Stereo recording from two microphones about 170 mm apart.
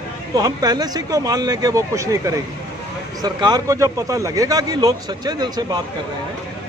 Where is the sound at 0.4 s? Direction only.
25° right (ahead or behind).